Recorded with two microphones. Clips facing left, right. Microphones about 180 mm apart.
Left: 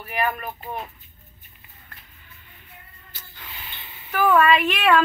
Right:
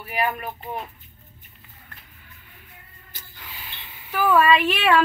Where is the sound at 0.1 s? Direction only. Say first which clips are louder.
Even; 10° right (ahead or behind).